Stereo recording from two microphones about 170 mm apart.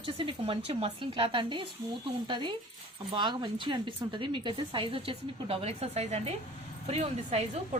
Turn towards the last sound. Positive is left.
turn(degrees=-40)  # may be behind; listen again after turning